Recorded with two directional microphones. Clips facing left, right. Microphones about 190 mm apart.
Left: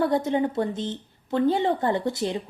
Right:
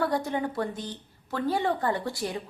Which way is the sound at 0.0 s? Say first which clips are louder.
Left 5 dB; 20° left (ahead or behind).